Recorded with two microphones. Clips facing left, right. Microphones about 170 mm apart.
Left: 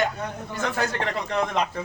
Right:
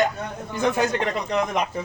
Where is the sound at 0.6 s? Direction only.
20° right (ahead or behind).